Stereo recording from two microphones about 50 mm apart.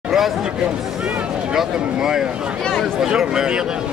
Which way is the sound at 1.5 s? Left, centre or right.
Centre.